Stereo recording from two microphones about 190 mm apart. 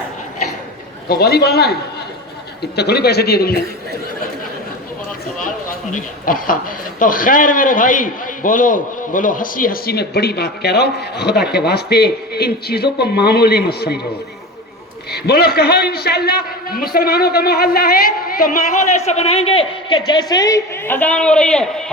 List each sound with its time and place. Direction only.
1.0 s speech: 55° left (ahead or behind)
5.4 s a man's voice: 45° left (ahead or behind)
15.1 s a man's voice: 55° left (ahead or behind); by 21.9 s 5° left (ahead or behind)